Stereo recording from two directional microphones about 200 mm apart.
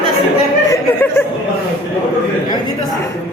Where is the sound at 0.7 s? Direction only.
15° left (ahead or behind).